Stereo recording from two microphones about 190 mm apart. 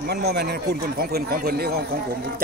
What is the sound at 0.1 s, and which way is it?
Speech, 60° right (ahead or behind).